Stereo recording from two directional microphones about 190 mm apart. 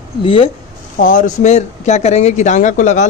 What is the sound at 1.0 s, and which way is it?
Speech, 45° left (ahead or behind).